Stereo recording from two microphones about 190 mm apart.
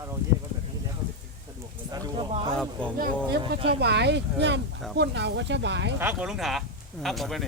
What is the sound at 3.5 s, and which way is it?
Speech, 30° right (ahead or behind).